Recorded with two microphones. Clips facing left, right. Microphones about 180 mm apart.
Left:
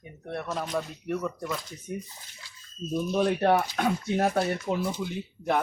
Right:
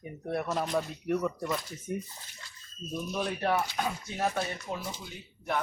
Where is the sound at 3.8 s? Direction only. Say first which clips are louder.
Left 6 dB; 65° left (ahead or behind).